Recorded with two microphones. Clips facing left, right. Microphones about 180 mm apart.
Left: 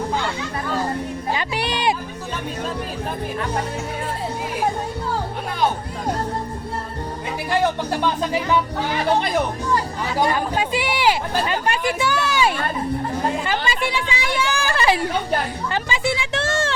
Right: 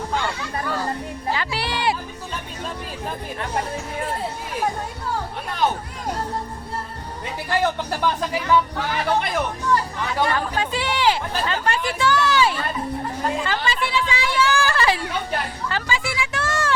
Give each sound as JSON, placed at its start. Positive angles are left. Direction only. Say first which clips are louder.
{"t": 1.3, "sound": "music", "louder": "left 1 dB", "side_deg": 20}
{"t": 7.6, "sound": "speech", "louder": "left 1 dB", "side_deg": 20}
{"t": 10.2, "sound": "speech", "louder": "left 2 dB", "side_deg": 15}